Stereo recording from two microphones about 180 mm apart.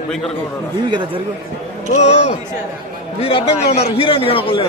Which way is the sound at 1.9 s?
40° left (ahead or behind).